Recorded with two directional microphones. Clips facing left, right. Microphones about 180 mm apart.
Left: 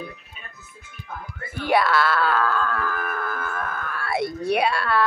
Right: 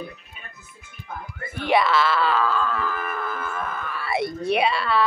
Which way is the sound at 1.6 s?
Centre (ahead or behind).